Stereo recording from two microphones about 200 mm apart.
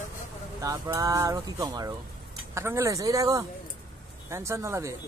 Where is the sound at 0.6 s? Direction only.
15° right (ahead or behind).